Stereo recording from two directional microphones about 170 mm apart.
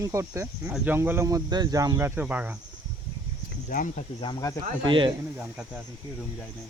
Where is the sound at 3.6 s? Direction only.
50° left (ahead or behind).